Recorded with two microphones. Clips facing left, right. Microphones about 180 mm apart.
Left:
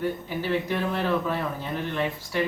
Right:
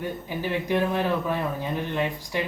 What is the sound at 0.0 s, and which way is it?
Speech, 15° right (ahead or behind).